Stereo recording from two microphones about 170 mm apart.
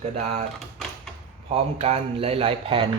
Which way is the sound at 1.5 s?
35° right (ahead or behind).